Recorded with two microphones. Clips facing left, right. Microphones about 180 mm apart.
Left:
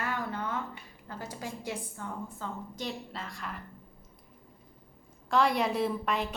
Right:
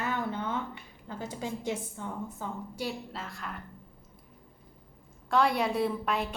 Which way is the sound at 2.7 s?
5° right (ahead or behind).